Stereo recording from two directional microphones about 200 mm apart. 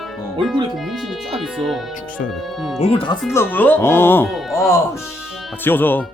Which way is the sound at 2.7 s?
30° left (ahead or behind).